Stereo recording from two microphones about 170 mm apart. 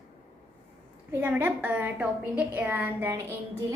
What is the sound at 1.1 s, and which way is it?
A woman's voice, 10° right (ahead or behind).